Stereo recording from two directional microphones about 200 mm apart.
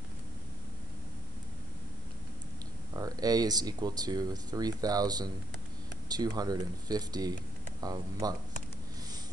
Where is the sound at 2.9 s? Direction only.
20° right (ahead or behind).